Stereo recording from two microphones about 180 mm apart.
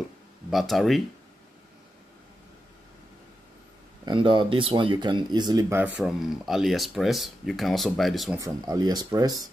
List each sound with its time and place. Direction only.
0.5 s speech: centre (ahead or behind)
4.0 s speech: 25° right (ahead or behind); by 8.4 s centre (ahead or behind)
8.4 s speech: 20° right (ahead or behind)